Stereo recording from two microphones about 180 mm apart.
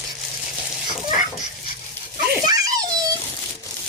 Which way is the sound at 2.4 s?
20° right (ahead or behind).